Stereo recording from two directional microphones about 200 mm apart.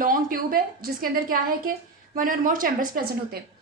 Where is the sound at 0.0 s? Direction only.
45° right (ahead or behind).